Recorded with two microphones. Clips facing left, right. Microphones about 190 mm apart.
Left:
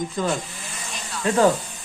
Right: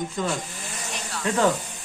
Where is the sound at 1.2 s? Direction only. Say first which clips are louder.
Left 4 dB; 35° left (ahead or behind).